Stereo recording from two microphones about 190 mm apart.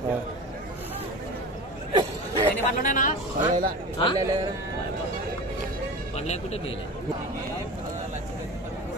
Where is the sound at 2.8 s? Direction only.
45° left (ahead or behind).